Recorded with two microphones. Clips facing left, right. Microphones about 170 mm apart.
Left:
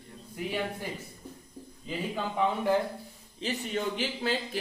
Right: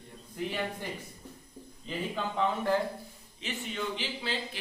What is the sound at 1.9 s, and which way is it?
Speech, 10° left (ahead or behind).